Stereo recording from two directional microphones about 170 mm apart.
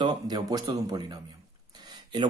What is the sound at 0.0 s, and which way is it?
Speech, 25° right (ahead or behind).